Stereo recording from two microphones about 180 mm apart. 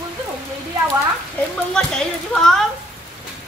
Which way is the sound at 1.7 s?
5° left (ahead or behind).